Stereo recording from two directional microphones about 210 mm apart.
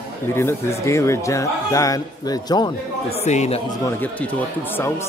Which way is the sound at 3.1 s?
30° left (ahead or behind).